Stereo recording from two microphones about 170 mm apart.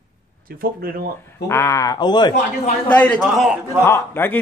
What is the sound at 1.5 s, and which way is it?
Speech, 15° left (ahead or behind).